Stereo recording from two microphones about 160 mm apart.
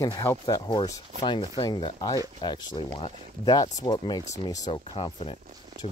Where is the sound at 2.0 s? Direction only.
25° left (ahead or behind).